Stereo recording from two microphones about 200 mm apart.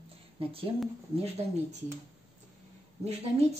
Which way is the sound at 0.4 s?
30° right (ahead or behind).